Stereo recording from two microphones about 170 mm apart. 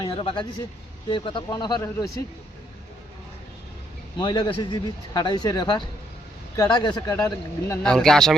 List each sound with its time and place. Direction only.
0.0 s speech: 30° left (ahead or behind)
4.2 s speech: 25° left (ahead or behind)
7.8 s speech: 5° left (ahead or behind)